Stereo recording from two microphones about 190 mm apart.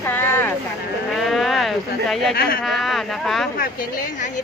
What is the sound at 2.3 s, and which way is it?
Speech, 55° left (ahead or behind).